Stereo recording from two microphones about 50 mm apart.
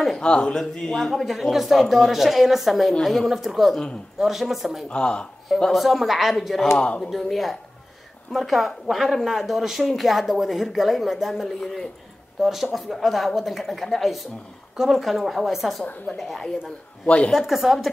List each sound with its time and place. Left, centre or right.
0.1 s a woman's voice: centre
4.8 s speech: centre
5.7 s a woman's voice: centre
6.8 s speech: left
7.1 s a woman's voice: centre
11.4 s speech: centre
12.4 s a woman's voice: centre
17.0 s a woman's voice: left
17.3 s a woman's voice: centre